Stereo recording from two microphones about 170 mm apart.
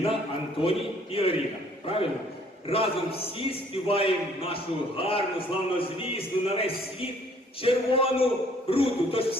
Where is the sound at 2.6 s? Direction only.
35° left (ahead or behind).